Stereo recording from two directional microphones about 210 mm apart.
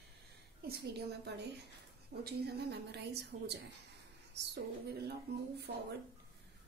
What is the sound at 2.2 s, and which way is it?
A woman's voice, 50° right (ahead or behind).